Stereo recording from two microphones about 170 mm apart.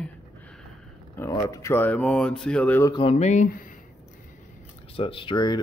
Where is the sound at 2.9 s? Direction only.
40° left (ahead or behind).